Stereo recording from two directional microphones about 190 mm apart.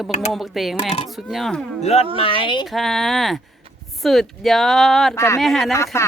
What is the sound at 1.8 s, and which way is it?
Speech, 35° left (ahead or behind).